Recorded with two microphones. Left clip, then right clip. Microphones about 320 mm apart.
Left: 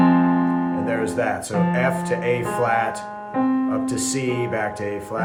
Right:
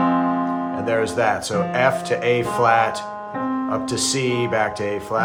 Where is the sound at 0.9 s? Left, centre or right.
Centre.